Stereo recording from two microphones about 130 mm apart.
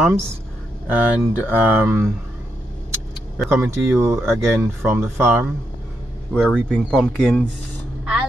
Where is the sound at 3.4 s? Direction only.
20° right (ahead or behind).